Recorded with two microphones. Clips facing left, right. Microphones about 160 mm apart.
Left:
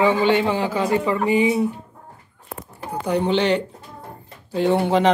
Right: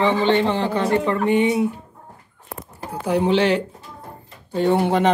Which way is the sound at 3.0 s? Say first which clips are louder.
Right 2 dB; 5° right (ahead or behind).